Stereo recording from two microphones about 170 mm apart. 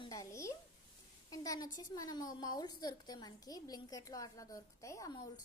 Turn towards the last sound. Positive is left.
turn(degrees=20)  # may be behind; listen again after turning